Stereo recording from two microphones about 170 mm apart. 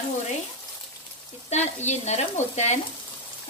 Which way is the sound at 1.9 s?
40° left (ahead or behind).